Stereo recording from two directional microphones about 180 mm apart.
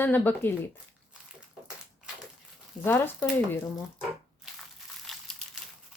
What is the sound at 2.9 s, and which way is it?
Speech, 10° left (ahead or behind).